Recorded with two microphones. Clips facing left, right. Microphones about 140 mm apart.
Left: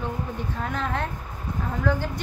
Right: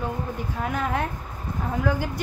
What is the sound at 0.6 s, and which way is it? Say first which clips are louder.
Speech: right 3 dB; 10° right (ahead or behind).